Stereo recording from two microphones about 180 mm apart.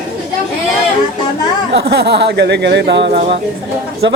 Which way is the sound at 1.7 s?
75° right (ahead or behind).